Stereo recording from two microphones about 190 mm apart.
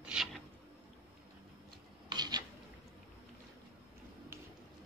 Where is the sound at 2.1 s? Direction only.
20° right (ahead or behind).